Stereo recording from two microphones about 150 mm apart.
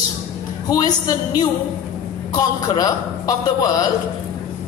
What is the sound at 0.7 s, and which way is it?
Speech, 25° left (ahead or behind).